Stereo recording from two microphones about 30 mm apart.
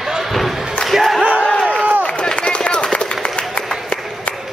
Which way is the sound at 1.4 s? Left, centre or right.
Left.